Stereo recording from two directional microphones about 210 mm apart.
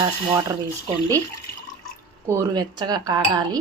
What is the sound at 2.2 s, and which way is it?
Speech, 15° right (ahead or behind).